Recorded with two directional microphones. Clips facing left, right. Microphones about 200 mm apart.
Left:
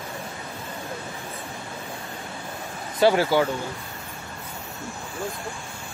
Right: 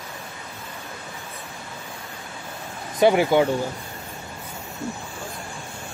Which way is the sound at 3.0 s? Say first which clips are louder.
Right 2 dB; 20° right (ahead or behind).